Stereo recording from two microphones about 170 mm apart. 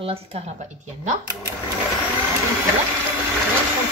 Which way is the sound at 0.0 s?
35° right (ahead or behind).